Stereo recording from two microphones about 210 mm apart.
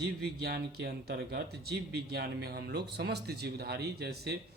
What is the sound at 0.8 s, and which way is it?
Speech, 50° right (ahead or behind).